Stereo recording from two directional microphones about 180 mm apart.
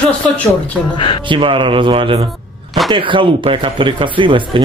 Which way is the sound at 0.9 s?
30° left (ahead or behind).